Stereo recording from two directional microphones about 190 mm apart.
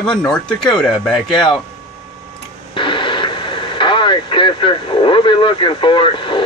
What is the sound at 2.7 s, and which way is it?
Speech, 25° left (ahead or behind).